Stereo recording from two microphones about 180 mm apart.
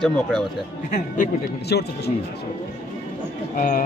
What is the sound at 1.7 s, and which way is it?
Speech, 65° left (ahead or behind).